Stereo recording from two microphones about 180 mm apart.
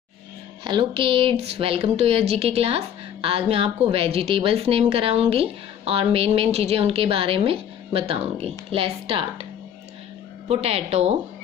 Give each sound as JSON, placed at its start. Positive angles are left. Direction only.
{"t": 0.7, "sound": "speech", "side_deg": -30}
{"t": 10.5, "sound": "speech", "side_deg": -35}